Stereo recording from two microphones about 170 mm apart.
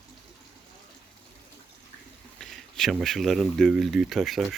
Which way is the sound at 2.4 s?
Centre (ahead or behind).